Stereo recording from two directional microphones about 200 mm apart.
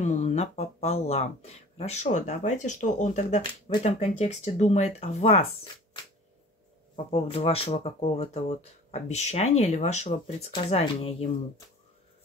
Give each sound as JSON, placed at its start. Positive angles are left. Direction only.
{"t": 0.0, "sound": "speech", "side_deg": 35}
{"t": 7.1, "sound": "speech", "side_deg": 30}